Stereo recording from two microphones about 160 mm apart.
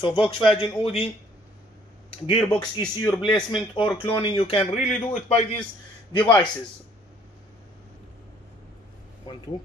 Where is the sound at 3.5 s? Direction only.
30° left (ahead or behind).